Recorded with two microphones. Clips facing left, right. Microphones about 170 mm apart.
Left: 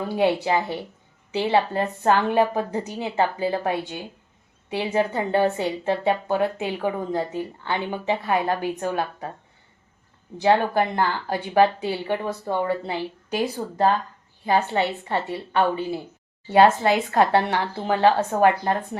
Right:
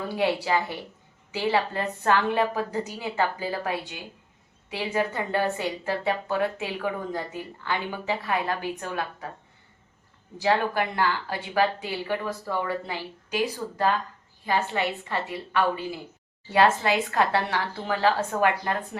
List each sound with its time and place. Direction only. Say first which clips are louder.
0.2 s a woman's voice: left 4 dB; 25° left (ahead or behind)
10.4 s a woman's voice: left 5 dB; 25° left (ahead or behind)